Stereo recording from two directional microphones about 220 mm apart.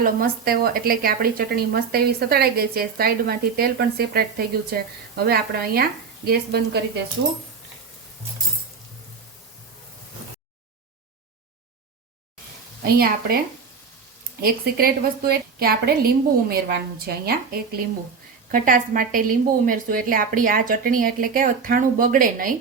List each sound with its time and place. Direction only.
0.0 s speech: 40° right (ahead or behind)
12.8 s speech: 45° right (ahead or behind)
14.4 s a woman's voice: 45° right (ahead or behind)